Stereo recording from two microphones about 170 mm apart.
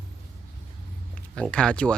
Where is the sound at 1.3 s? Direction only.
5° left (ahead or behind).